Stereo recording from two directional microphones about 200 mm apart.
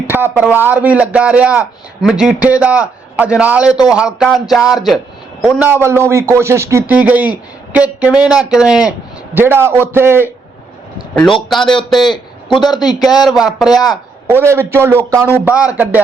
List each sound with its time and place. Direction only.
0.1 s a man's voice: 10° right (ahead or behind)
11.4 s speech: centre (ahead or behind)
12.5 s speech: 20° left (ahead or behind)
13.2 s speech: centre (ahead or behind)
13.7 s speech: 20° left (ahead or behind)
14.3 s a man's voice: 10° right (ahead or behind)